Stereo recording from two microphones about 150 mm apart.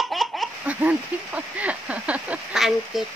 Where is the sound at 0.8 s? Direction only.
10° right (ahead or behind).